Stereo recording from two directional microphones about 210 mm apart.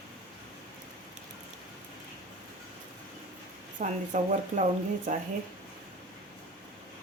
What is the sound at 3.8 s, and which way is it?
Speech, 35° right (ahead or behind).